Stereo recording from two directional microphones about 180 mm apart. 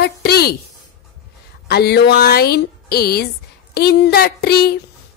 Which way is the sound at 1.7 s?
65° left (ahead or behind).